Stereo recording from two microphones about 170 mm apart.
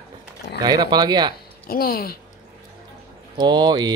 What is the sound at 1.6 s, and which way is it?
Speech, 60° left (ahead or behind).